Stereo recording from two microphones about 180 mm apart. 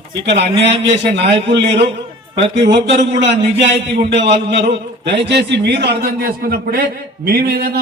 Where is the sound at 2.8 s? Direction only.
80° right.